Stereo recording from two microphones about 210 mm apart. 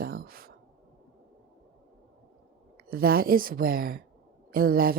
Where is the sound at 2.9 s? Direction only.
45° right (ahead or behind).